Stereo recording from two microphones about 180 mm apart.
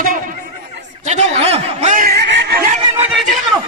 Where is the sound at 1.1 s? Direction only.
40° right (ahead or behind); by 2.5 s 70° right (ahead or behind).